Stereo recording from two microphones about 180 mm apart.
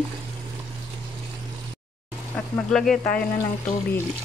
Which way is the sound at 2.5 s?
Centre (ahead or behind).